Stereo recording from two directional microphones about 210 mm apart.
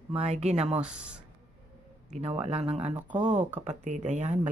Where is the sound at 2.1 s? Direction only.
30° right (ahead or behind).